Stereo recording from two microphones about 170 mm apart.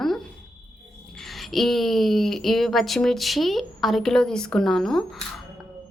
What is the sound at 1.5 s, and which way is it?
Speech, centre (ahead or behind).